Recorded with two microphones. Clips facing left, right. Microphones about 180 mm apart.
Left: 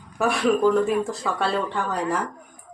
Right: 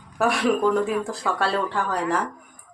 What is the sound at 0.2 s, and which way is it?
Speech, centre (ahead or behind).